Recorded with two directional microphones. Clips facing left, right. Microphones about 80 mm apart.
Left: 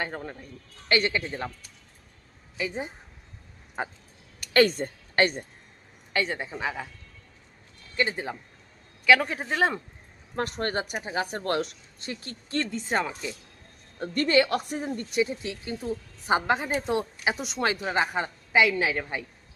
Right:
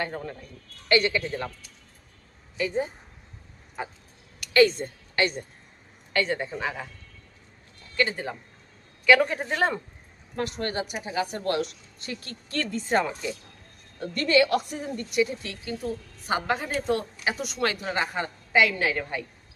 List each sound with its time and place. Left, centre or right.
0.0 s a woman's voice: left
2.6 s speech: centre
4.5 s a woman's voice: left
6.1 s speech: centre
7.9 s speech: centre
9.0 s speech: centre
10.3 s a woman's voice: left
12.9 s speech: centre
14.0 s a woman's voice: left; by 19.2 s centre